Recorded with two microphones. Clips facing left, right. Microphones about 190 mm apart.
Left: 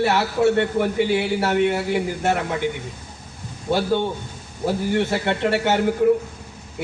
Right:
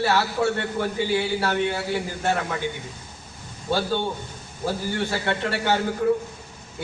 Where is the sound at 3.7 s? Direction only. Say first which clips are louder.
Left 4 dB; 20° left (ahead or behind).